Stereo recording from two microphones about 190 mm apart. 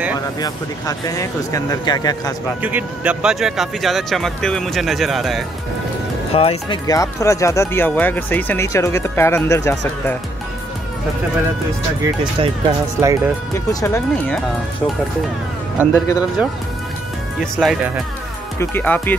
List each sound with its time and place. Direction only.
0.4 s speech: 20° left (ahead or behind)
2.6 s speech: 5° right (ahead or behind)
6.3 s speech: 30° left (ahead or behind)
6.9 s speech: 15° left (ahead or behind)
12.4 s speech: 20° right (ahead or behind)
13.7 s speech: 15° left (ahead or behind)
15.9 s speech: 15° left (ahead or behind)
17.4 s speech: centre (ahead or behind)
18.6 s speech: 10° left (ahead or behind)